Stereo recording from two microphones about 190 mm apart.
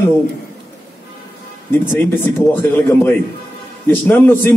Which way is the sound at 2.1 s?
10° left (ahead or behind).